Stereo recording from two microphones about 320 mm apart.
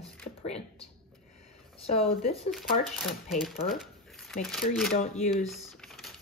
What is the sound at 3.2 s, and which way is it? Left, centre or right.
Speech, centre.